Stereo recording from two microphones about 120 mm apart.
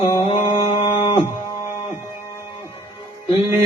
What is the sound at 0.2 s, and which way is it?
Mantra, 65° left (ahead or behind).